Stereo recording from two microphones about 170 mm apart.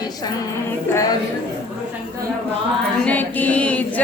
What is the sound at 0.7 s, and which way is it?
Speech, 15° left (ahead or behind).